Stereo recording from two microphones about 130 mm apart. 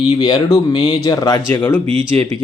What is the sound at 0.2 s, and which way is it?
A man's voice, 30° left (ahead or behind).